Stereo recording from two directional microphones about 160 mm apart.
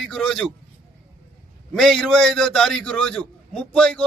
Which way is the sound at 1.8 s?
Centre (ahead or behind).